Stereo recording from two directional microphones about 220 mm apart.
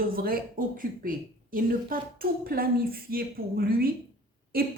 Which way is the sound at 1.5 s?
40° right (ahead or behind).